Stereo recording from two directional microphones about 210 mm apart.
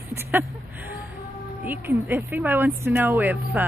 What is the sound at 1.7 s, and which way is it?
Speech, 10° right (ahead or behind).